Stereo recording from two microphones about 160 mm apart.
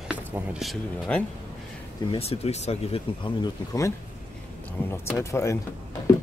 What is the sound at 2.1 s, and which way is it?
Speech, 40° left (ahead or behind).